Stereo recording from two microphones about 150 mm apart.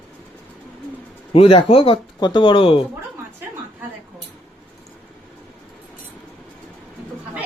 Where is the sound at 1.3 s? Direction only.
40° left (ahead or behind).